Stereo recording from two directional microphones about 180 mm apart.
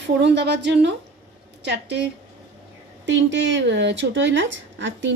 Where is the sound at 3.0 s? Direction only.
90° right.